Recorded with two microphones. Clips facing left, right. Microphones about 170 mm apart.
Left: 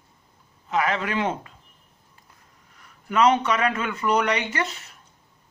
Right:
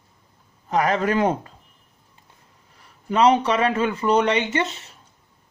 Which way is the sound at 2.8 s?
30° right (ahead or behind).